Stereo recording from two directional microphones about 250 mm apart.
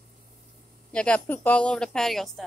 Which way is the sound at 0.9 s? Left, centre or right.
Centre.